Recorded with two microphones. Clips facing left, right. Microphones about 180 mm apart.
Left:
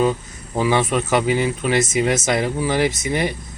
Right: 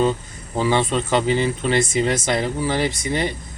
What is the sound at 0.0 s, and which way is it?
Speech, 10° left (ahead or behind).